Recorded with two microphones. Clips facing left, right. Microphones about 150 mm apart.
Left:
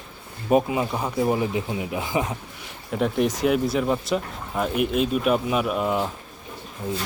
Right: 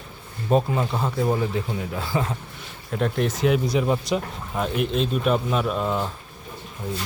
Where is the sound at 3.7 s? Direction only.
5° right (ahead or behind).